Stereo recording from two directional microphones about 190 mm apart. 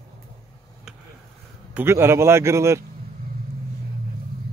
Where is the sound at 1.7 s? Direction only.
15° right (ahead or behind).